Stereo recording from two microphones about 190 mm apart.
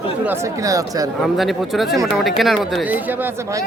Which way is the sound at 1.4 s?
Centre (ahead or behind).